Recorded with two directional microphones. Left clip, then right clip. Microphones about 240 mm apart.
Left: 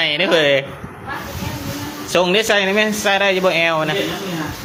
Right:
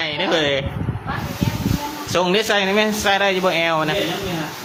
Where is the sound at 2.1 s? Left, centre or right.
Centre.